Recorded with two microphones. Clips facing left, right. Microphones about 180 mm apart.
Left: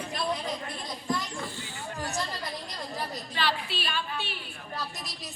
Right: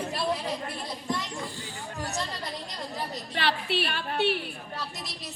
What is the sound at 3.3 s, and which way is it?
A woman's voice, 65° right (ahead or behind).